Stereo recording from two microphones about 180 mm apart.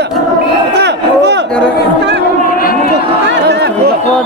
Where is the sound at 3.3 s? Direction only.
70° right (ahead or behind).